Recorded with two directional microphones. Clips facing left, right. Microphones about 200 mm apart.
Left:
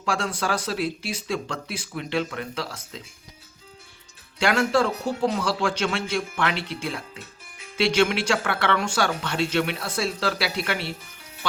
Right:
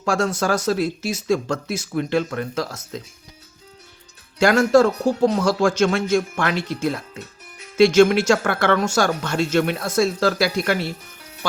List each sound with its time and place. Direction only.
0.0 s speech: 45° right (ahead or behind)
4.4 s speech: 45° right (ahead or behind)